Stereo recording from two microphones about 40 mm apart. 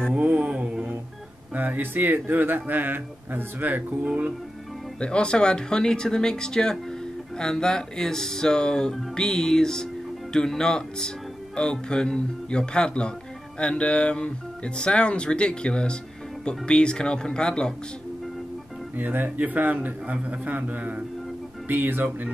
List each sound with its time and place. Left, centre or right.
0.2 s mantra: right
1.5 s speech: right
5.0 s speech: left
18.9 s speech: right
21.6 s speech: right